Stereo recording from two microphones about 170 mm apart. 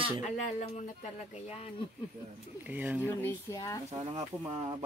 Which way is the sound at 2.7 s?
10° right (ahead or behind).